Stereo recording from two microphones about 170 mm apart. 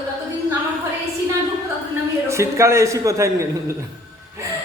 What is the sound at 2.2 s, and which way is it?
A man's voice, 15° right (ahead or behind).